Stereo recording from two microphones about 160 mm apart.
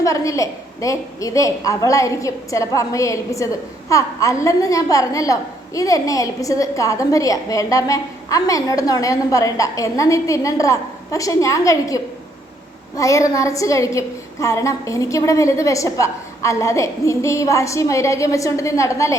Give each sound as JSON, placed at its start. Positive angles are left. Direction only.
{"t": 0.0, "sound": "a woman's voice", "side_deg": 20}
{"t": 13.0, "sound": "a woman's voice", "side_deg": 20}